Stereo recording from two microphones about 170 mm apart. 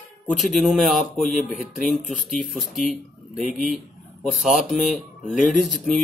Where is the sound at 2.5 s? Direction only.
Centre (ahead or behind).